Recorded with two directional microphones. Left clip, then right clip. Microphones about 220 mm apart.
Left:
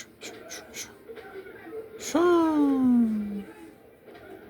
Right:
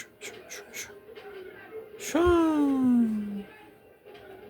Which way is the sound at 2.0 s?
15° right (ahead or behind).